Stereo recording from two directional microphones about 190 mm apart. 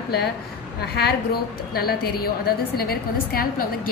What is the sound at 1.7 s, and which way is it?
A woman's voice, 55° left (ahead or behind).